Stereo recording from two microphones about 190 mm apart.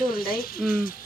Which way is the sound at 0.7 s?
50° left (ahead or behind).